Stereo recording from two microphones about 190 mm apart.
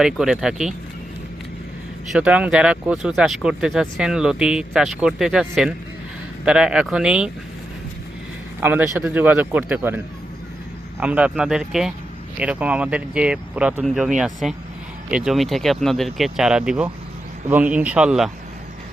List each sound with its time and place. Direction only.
0.0 s speech: 5° right (ahead or behind)
2.1 s speech: 5° right (ahead or behind)
8.6 s a man's voice: 10° right (ahead or behind)
11.0 s a man's voice: 5° right (ahead or behind)